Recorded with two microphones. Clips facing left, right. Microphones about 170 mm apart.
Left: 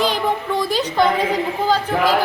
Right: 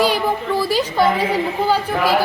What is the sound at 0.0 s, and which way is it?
A woman's voice, 5° right (ahead or behind).